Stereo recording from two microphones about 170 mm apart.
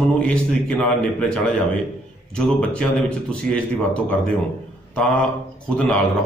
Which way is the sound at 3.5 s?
5° left (ahead or behind).